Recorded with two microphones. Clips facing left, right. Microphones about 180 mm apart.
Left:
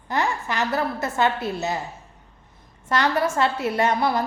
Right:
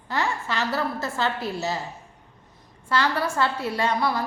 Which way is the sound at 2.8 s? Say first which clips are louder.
Left 3 dB; 20° left (ahead or behind).